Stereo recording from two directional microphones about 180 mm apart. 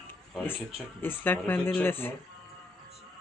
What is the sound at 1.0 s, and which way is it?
Speech, 10° left (ahead or behind).